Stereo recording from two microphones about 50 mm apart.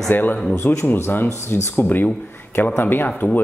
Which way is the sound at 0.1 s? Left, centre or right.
Left.